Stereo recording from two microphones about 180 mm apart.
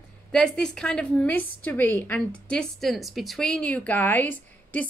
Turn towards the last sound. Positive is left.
turn(degrees=10)  # may be behind; listen again after turning